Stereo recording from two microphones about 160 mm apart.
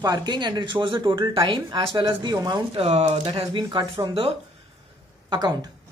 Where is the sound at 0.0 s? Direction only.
25° right (ahead or behind).